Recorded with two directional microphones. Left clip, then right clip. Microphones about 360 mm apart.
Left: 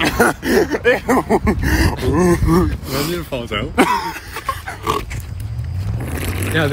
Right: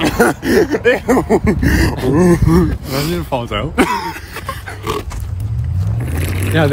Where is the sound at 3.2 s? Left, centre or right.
Centre.